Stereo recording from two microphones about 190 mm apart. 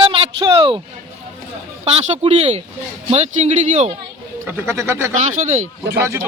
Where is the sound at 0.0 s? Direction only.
30° right (ahead or behind).